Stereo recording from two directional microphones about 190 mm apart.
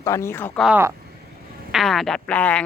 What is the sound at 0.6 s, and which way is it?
Speech, 10° right (ahead or behind).